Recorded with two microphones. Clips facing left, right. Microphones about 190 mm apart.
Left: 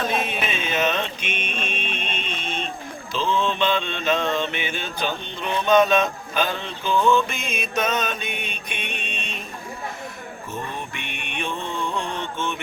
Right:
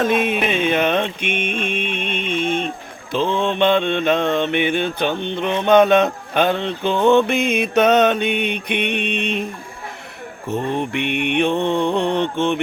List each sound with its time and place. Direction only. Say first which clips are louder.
0.0 s music: right 7 dB; 60° right (ahead or behind)
3.1 s mantra: right 4 dB; 60° right (ahead or behind)
10.5 s mantra: right 12 dB; 65° right (ahead or behind)